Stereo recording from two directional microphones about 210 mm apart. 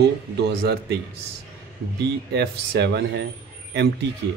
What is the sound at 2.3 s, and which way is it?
Speech, 50° right (ahead or behind).